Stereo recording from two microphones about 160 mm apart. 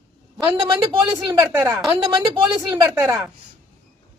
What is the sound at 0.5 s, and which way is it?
Speech, 30° right (ahead or behind).